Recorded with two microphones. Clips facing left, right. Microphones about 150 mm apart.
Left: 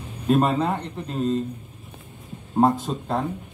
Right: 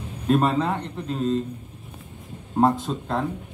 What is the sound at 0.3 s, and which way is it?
Speech, 5° left (ahead or behind).